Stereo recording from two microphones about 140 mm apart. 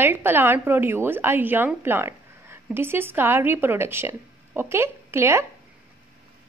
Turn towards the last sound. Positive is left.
turn(degrees=-20)  # may be behind; listen again after turning